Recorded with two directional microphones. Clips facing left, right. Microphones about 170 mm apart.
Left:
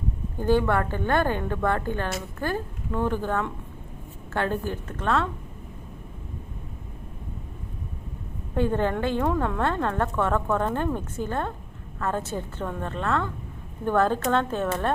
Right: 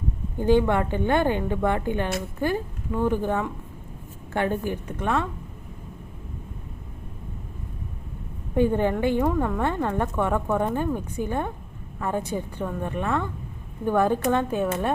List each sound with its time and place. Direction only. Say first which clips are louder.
0.3 s speech: right 2 dB; 15° right (ahead or behind)
8.5 s speech: right 3 dB; 15° right (ahead or behind)